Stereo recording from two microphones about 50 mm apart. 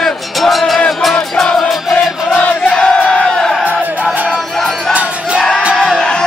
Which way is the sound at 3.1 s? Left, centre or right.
Centre.